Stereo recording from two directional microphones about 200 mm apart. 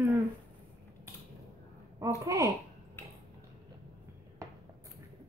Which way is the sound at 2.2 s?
15° right (ahead or behind).